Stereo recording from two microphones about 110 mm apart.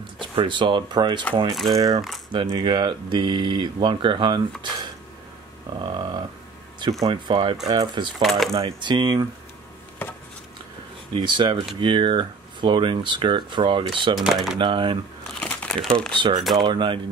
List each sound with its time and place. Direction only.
0.2 s speech: 45° right (ahead or behind)
1.5 s speech: centre (ahead or behind)
2.5 s speech: 45° right (ahead or behind)
5.9 s a sound: 40° right (ahead or behind)
6.8 s speech: 30° right (ahead or behind)
7.1 s speech: 50° right (ahead or behind)
8.2 s speech: centre (ahead or behind)
8.5 s speech: 45° right (ahead or behind)
11.1 s speech: 45° right (ahead or behind)
14.2 s speech: 5° right (ahead or behind)
14.6 s speech: 50° right (ahead or behind)
15.3 s crumpling: 10° left (ahead or behind)
16.2 s speech: 45° right (ahead or behind)